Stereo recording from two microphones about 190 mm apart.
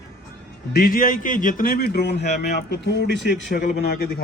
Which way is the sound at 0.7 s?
50° left (ahead or behind).